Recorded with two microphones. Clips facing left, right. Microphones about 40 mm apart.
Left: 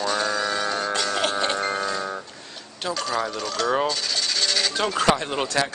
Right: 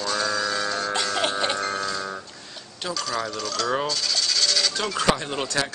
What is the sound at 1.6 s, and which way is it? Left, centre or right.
Music, centre.